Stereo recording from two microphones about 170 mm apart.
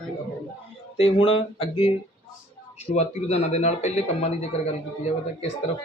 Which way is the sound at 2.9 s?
40° left (ahead or behind).